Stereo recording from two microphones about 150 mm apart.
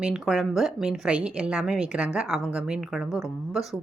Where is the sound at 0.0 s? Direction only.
5° right (ahead or behind).